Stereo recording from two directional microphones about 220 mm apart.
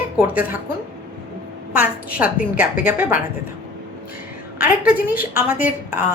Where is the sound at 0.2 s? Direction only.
10° right (ahead or behind).